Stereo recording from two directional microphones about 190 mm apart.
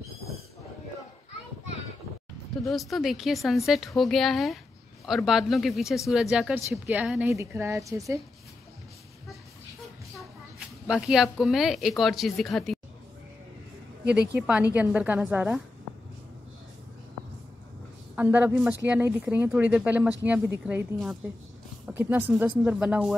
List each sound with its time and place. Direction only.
2.6 s a woman's voice: centre (ahead or behind); by 8.2 s 15° right (ahead or behind)
10.9 s a woman's voice: centre (ahead or behind)
14.3 s speech: 5° right (ahead or behind)
18.1 s speech: 10° right (ahead or behind)